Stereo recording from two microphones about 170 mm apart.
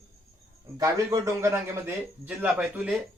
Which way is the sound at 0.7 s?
20° right (ahead or behind).